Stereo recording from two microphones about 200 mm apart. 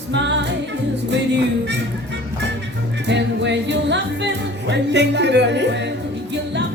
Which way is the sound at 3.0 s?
60° right (ahead or behind).